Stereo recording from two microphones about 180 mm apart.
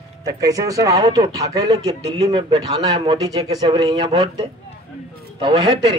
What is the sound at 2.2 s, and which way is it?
Speech, 30° right (ahead or behind).